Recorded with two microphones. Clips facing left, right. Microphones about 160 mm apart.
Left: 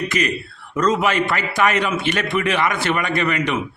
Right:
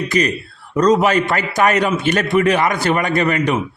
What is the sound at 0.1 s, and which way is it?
A man's voice, 35° right (ahead or behind).